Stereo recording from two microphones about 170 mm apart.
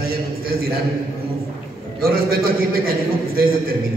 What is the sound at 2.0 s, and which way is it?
A man's voice, 60° right (ahead or behind).